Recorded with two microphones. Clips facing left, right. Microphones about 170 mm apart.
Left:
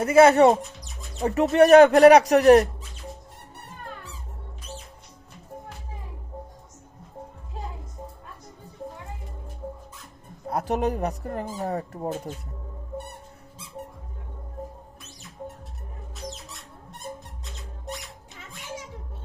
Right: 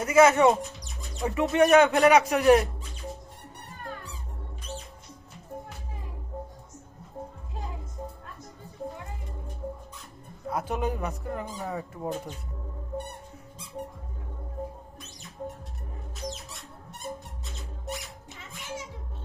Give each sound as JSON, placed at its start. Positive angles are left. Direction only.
{"t": 0.0, "sound": "speech", "side_deg": 35}
{"t": 0.8, "sound": "music", "side_deg": 0}
{"t": 1.2, "sound": "speech", "side_deg": 40}
{"t": 10.5, "sound": "speech", "side_deg": 40}
{"t": 16.3, "sound": "music", "side_deg": 0}